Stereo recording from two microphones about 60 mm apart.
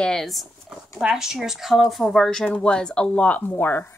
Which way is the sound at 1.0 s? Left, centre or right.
Centre.